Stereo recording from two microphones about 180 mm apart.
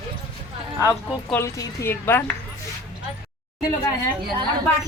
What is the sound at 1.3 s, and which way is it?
A woman's voice, 10° left (ahead or behind).